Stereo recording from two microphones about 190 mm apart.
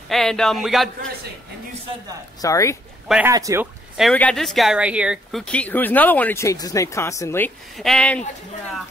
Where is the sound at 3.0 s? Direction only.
5° right (ahead or behind).